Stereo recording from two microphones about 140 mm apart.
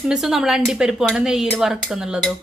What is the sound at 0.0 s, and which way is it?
Speech, 5° right (ahead or behind).